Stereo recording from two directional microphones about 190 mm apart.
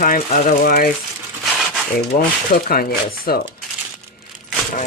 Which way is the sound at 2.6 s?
50° left (ahead or behind).